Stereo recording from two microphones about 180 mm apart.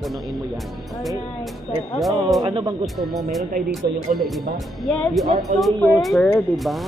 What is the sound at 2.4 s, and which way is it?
Speech, 30° right (ahead or behind).